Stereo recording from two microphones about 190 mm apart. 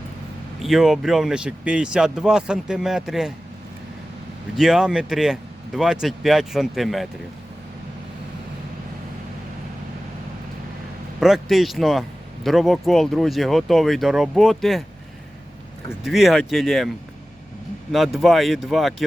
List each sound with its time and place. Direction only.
0.6 s speech: centre (ahead or behind)
4.5 s speech: centre (ahead or behind)
11.2 s speech: centre (ahead or behind)
16.0 s speech: centre (ahead or behind)
17.9 s speech: centre (ahead or behind)